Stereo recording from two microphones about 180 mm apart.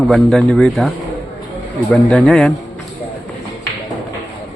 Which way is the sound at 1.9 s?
5° left (ahead or behind).